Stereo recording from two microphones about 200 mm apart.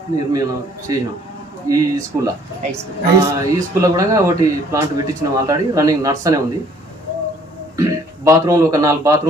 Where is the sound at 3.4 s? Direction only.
15° right (ahead or behind).